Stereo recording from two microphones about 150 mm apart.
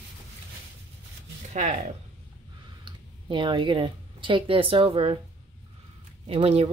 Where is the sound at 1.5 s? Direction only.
55° right (ahead or behind).